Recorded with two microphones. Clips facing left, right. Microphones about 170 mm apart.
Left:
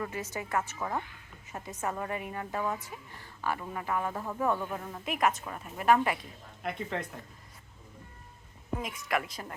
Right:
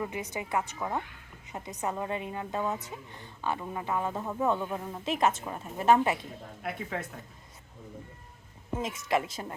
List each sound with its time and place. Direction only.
0.0 s a woman's voice: 15° right (ahead or behind)
5.0 s a woman's voice: 25° right (ahead or behind)
6.6 s speech: 5° right (ahead or behind)
8.8 s a woman's voice: 25° right (ahead or behind)